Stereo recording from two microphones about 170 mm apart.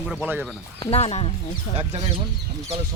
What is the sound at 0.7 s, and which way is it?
Speech, 35° left (ahead or behind).